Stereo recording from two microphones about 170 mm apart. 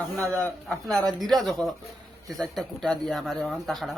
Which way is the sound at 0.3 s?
5° left (ahead or behind).